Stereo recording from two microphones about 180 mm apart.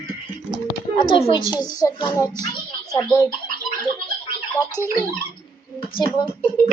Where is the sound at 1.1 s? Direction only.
30° left (ahead or behind).